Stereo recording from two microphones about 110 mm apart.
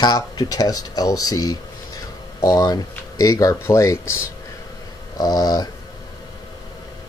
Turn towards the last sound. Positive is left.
turn(degrees=35)  # may be behind; listen again after turning